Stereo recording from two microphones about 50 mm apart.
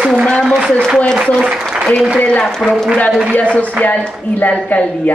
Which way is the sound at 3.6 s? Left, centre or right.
Left.